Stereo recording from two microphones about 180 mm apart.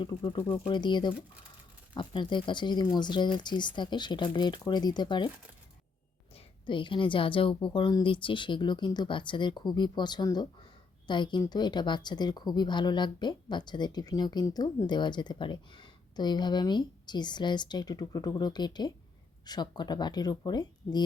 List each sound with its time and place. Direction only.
0.0 s a woman's voice: 25° left (ahead or behind)
6.3 s a woman's voice: 25° left (ahead or behind)